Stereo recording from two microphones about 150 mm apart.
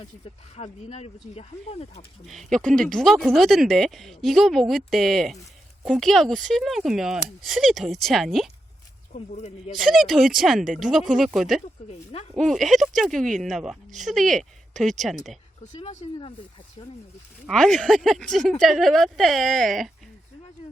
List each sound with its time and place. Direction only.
0.5 s speech: 45° left (ahead or behind)
2.2 s speech: centre (ahead or behind)
9.1 s speech: 50° left (ahead or behind)
9.8 s speech: centre (ahead or behind)
11.9 s speech: 45° left (ahead or behind)
12.4 s speech: centre (ahead or behind)
15.6 s speech: 50° left (ahead or behind)
17.5 s speech: centre (ahead or behind)